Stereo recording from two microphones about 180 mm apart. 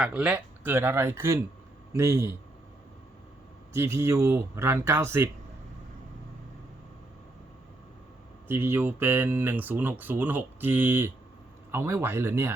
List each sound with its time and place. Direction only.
0.0 s a man's voice: 5° right (ahead or behind)
3.7 s speech: 15° right (ahead or behind)
8.4 s speech: 10° right (ahead or behind)